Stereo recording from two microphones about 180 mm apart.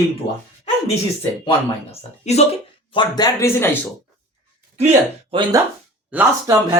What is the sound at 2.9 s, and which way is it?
Speech, 25° left (ahead or behind).